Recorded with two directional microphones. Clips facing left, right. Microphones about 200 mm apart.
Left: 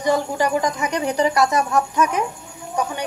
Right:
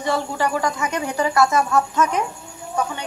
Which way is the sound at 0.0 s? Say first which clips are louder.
Left 3 dB; 15° left (ahead or behind).